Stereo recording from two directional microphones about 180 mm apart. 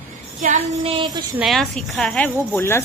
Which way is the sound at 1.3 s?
Centre (ahead or behind).